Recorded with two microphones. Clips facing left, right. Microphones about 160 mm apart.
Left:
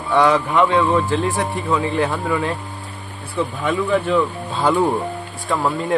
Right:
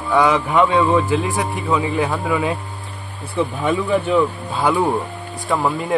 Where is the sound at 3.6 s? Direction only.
10° right (ahead or behind).